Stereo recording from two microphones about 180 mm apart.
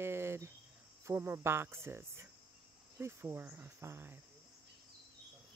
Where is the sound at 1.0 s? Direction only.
15° right (ahead or behind).